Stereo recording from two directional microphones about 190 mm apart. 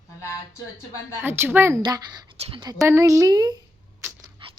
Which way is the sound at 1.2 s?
10° right (ahead or behind).